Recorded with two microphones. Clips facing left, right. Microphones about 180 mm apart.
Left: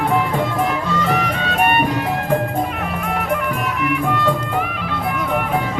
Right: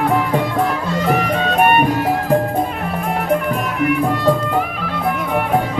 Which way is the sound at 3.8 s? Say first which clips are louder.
Right 4 dB; 35° right (ahead or behind).